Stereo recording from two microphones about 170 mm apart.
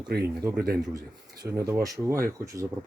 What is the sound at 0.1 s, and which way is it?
Speech, 70° right (ahead or behind).